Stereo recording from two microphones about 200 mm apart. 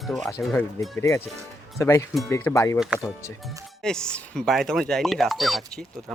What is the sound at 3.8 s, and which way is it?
Speech, 5° left (ahead or behind).